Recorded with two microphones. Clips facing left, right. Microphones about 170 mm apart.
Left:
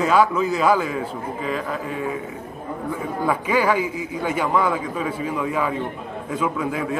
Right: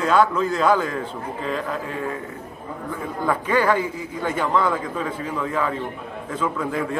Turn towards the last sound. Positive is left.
turn(degrees=5)  # may be behind; listen again after turning